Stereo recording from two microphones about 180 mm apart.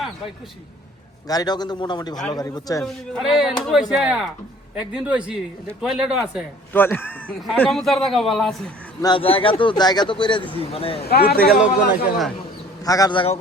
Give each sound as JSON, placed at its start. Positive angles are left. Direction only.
{"t": 1.3, "sound": "a man's voice", "side_deg": 20}
{"t": 2.8, "sound": "a man's voice", "side_deg": 0}
{"t": 6.7, "sound": "a man's voice", "side_deg": 10}
{"t": 9.0, "sound": "a man's voice", "side_deg": 25}
{"t": 10.9, "sound": "speech", "side_deg": 60}
{"t": 11.5, "sound": "a man's voice", "side_deg": -5}
{"t": 12.8, "sound": "a man's voice", "side_deg": 20}